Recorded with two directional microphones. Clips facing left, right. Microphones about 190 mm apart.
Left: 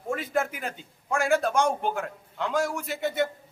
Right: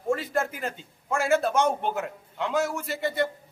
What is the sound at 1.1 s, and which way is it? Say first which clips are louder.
A man's voice: even; centre (ahead or behind).